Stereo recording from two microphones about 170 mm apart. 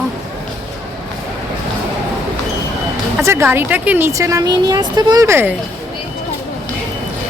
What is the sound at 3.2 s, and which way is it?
Speech, 15° right (ahead or behind).